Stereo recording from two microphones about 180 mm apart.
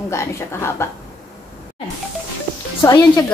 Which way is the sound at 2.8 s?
20° left (ahead or behind).